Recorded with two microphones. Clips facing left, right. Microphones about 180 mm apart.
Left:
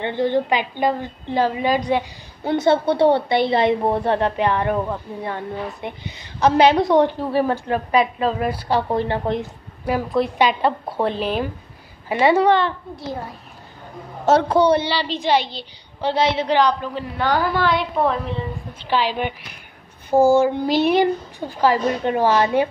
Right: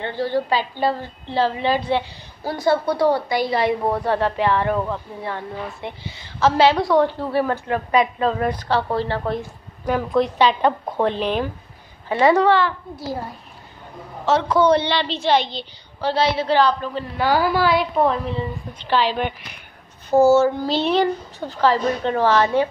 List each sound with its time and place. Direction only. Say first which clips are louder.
0.0 s a woman's voice: left 3 dB; 20° left (ahead or behind)
9.8 s speech: right 1 dB; 5° left (ahead or behind)
12.4 s a woman's voice: even; 20° left (ahead or behind)
12.9 s speech: right 1 dB; 5° right (ahead or behind)
14.3 s a woman's voice: left 3 dB; 45° left (ahead or behind)
14.6 s speech: even; 10° left (ahead or behind)
16.0 s speech: even; 20° left (ahead or behind)
17.2 s speech: right 2 dB; 5° right (ahead or behind)
18.8 s speech: right 1 dB; 10° left (ahead or behind)